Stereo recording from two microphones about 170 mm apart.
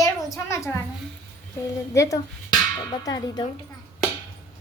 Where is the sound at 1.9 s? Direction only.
20° left (ahead or behind).